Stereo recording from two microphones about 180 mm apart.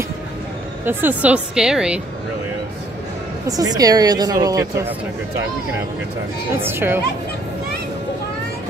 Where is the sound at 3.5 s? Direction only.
20° right (ahead or behind).